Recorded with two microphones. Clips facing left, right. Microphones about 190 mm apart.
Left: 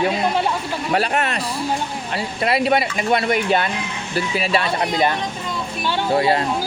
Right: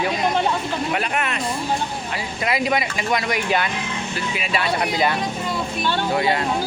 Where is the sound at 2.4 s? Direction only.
30° left (ahead or behind).